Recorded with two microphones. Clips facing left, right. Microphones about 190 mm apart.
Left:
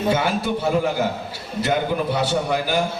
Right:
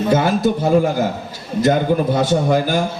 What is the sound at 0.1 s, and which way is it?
Speech, 45° right (ahead or behind).